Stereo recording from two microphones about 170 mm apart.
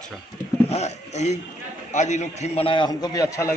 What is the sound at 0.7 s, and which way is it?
A man's voice, 40° left (ahead or behind).